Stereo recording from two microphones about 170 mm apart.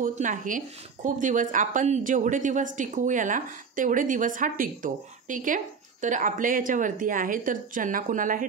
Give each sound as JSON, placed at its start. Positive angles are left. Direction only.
{"t": 0.0, "sound": "speech", "side_deg": -50}